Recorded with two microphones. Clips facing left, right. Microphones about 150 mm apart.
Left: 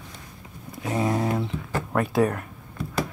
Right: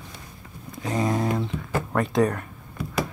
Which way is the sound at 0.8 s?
5° left (ahead or behind).